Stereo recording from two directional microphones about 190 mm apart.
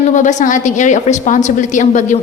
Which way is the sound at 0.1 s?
40° left (ahead or behind).